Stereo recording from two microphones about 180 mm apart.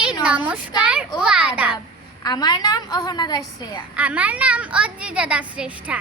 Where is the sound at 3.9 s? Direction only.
10° right (ahead or behind).